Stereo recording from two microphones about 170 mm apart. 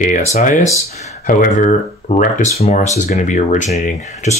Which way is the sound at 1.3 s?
55° left (ahead or behind).